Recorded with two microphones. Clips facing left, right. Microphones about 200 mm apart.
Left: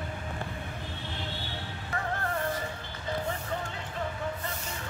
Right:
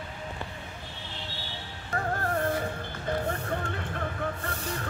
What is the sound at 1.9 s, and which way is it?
Music, 40° right (ahead or behind).